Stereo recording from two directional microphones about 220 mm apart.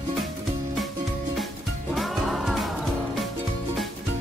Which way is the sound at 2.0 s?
Centre (ahead or behind).